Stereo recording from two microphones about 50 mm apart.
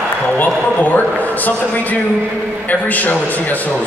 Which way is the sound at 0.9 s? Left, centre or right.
Left.